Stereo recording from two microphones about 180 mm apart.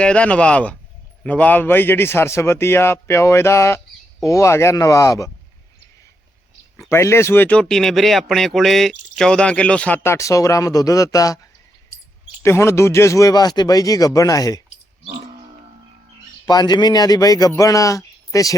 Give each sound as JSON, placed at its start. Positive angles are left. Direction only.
{"t": 0.0, "sound": "speech", "side_deg": 5}
{"t": 6.7, "sound": "speech", "side_deg": 15}
{"t": 12.4, "sound": "speech", "side_deg": 15}
{"t": 16.5, "sound": "speech", "side_deg": 25}